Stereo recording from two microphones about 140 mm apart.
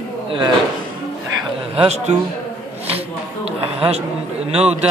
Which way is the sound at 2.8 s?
45° right (ahead or behind).